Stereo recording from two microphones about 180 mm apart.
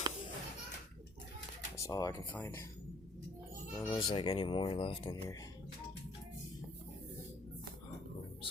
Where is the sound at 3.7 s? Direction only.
15° left (ahead or behind).